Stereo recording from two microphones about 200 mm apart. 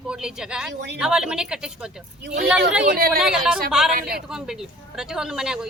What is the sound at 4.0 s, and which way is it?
Speech, 45° right (ahead or behind).